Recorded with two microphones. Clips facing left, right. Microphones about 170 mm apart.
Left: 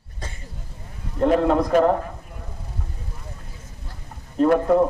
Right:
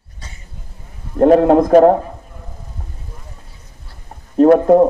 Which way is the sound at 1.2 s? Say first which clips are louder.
Right 8 dB; 50° right (ahead or behind).